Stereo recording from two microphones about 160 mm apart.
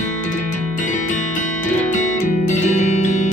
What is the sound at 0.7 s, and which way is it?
Music, 50° left (ahead or behind).